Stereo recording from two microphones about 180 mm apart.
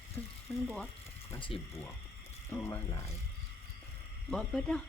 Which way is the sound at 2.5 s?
10° left (ahead or behind).